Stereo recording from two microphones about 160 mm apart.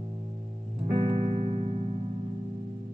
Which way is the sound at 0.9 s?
35° right (ahead or behind).